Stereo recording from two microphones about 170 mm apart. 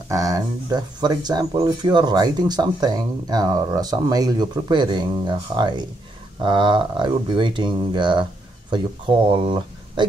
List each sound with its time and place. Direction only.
0.1 s speech: 20° right (ahead or behind)